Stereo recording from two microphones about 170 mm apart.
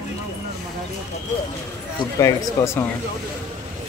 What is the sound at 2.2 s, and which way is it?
Speech, 20° left (ahead or behind).